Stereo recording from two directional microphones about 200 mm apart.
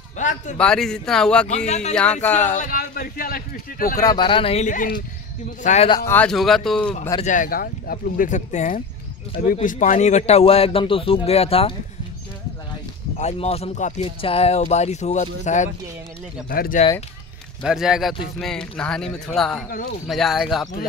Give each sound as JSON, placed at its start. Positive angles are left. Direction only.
{"t": 0.2, "sound": "a man's voice", "side_deg": 40}
{"t": 0.6, "sound": "speech", "side_deg": 5}
{"t": 1.5, "sound": "speech", "side_deg": 35}
{"t": 4.0, "sound": "speech", "side_deg": 20}
{"t": 5.9, "sound": "speech", "side_deg": 20}
{"t": 6.1, "sound": "speech", "side_deg": 5}
{"t": 7.2, "sound": "speech", "side_deg": 40}
{"t": 13.2, "sound": "speech", "side_deg": 30}
{"t": 17.6, "sound": "speech", "side_deg": -5}